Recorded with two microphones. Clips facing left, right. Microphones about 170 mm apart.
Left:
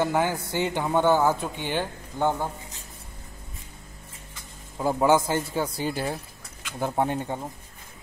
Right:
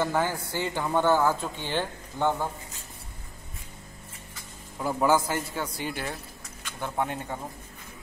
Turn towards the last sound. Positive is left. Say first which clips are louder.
# left 5 dB
turn(degrees=35)  # may be behind; listen again after turning